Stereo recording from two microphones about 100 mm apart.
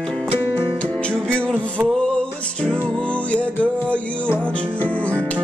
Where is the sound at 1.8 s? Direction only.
10° left (ahead or behind).